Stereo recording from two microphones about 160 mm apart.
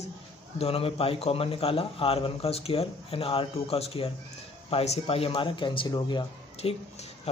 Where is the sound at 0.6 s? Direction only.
35° left (ahead or behind).